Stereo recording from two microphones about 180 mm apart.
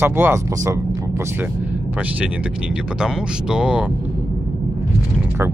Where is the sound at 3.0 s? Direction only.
5° right (ahead or behind).